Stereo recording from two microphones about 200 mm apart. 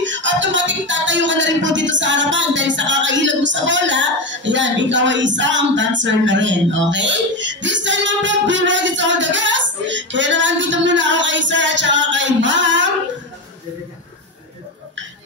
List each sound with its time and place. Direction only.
0.0 s music: 65° right (ahead or behind)